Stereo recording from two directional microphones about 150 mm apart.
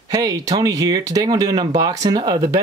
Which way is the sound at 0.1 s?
25° right (ahead or behind).